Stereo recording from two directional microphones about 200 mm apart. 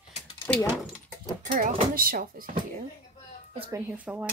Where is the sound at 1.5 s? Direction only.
45° right (ahead or behind).